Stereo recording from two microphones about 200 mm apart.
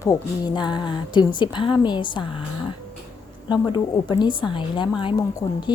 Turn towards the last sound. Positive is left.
turn(degrees=25)  # may be behind; listen again after turning